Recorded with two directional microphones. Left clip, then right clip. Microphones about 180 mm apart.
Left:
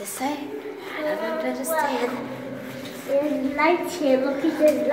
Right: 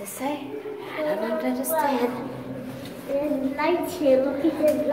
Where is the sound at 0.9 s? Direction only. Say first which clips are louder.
Even; 30° right (ahead or behind).